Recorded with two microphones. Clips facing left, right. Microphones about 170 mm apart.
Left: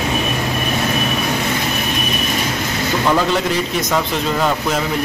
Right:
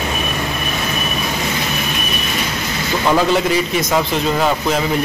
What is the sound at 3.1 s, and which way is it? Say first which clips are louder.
A man's voice: right 5 dB; 5° right (ahead or behind).